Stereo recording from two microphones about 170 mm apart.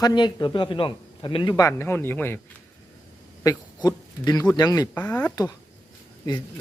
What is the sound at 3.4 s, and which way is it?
A man's voice, 20° left (ahead or behind).